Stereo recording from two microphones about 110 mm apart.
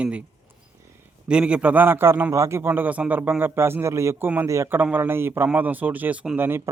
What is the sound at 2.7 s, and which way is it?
A man's voice, 15° right (ahead or behind).